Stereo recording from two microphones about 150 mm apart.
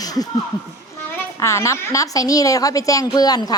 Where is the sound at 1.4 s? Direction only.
20° left (ahead or behind).